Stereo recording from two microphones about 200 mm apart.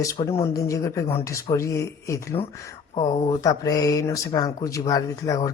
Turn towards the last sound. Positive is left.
turn(degrees=15)  # may be behind; listen again after turning